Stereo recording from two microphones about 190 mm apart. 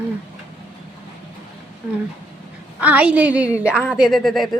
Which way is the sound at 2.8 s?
10° right (ahead or behind).